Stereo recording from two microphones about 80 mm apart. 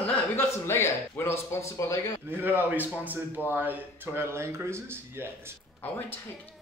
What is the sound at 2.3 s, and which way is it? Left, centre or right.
Speech, right.